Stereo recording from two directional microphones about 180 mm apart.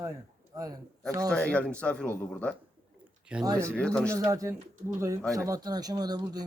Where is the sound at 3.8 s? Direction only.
5° left (ahead or behind).